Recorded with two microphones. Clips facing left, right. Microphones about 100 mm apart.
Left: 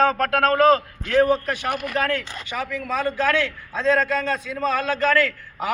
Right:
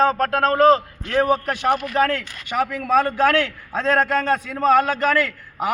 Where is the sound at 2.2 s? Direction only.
25° left (ahead or behind).